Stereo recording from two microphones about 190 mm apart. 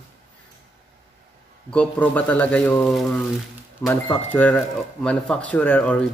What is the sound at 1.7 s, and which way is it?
Speech, 5° left (ahead or behind).